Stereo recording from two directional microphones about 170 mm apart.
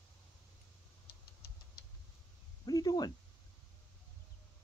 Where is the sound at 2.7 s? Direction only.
25° left (ahead or behind).